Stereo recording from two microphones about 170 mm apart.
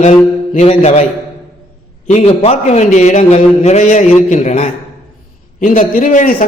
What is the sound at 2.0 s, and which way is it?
A man's voice, 40° left (ahead or behind).